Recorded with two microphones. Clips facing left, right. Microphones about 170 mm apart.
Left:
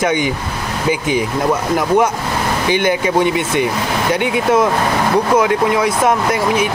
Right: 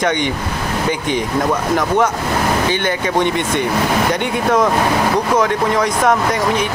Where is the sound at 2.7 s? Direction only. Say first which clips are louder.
Left 3 dB; 10° left (ahead or behind).